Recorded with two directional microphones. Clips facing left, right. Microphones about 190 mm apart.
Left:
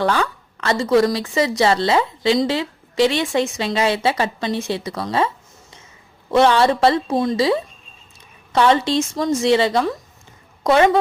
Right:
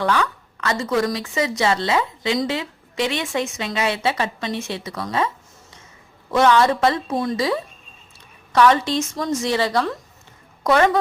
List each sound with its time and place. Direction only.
0.0 s a woman's voice: 30° left (ahead or behind)
6.3 s a woman's voice: 30° left (ahead or behind)